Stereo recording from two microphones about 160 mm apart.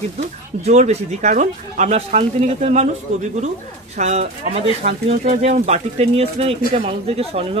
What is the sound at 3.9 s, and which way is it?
Speech, 45° right (ahead or behind).